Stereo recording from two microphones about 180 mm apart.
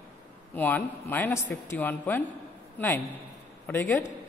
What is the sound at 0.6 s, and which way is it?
A man's voice, 10° left (ahead or behind).